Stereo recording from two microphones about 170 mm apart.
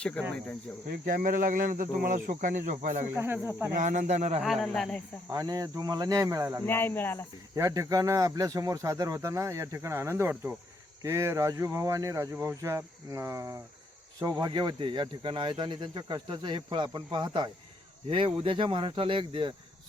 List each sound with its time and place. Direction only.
0.0 s speech: 5° left (ahead or behind)
0.9 s speech: 60° right (ahead or behind)
3.2 s speech: 15° right (ahead or behind)
3.8 s speech: 45° right (ahead or behind)
4.4 s speech: centre (ahead or behind)
5.3 s speech: 20° right (ahead or behind)
6.7 s speech: 15° left (ahead or behind)
7.5 s speech: 20° right (ahead or behind)